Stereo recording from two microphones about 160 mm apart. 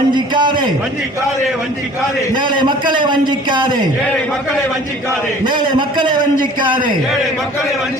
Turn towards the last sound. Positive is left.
turn(degrees=-30)  # may be behind; listen again after turning